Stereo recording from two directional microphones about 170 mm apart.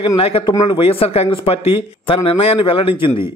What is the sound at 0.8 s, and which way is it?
A man's voice, 35° left (ahead or behind).